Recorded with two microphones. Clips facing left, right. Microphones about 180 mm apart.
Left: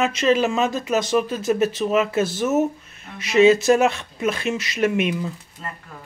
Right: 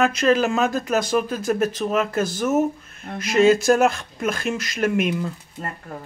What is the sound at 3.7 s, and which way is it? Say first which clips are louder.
Speech: even; centre (ahead or behind).